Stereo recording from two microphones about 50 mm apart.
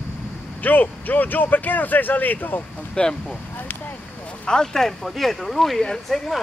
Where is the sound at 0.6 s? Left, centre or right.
Left.